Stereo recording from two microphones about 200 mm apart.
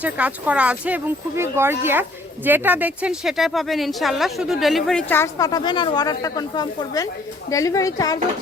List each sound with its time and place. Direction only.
0.0 s a woman's voice: 5° right (ahead or behind); by 8.2 s 20° left (ahead or behind)